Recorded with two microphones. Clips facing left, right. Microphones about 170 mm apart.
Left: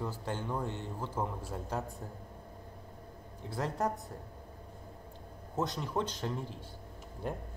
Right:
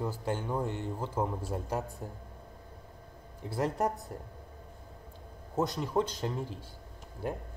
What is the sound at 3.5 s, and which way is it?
Speech, 10° right (ahead or behind).